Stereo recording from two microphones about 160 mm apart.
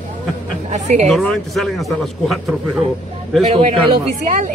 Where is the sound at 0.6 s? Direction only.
45° right (ahead or behind).